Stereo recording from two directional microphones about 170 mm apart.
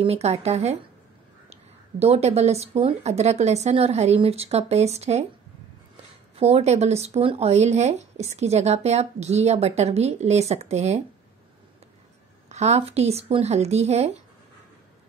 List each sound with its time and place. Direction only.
0.0 s speech: 40° right (ahead or behind)
6.3 s speech: 40° right (ahead or behind)
12.4 s speech: 40° right (ahead or behind)